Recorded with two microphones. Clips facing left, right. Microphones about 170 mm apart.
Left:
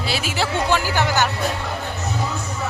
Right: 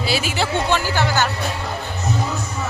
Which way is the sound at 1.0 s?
15° left (ahead or behind).